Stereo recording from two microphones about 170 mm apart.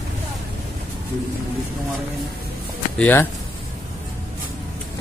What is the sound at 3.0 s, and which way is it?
Speech, 10° left (ahead or behind).